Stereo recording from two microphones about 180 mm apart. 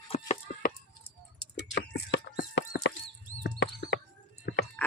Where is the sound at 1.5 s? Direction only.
65° left (ahead or behind).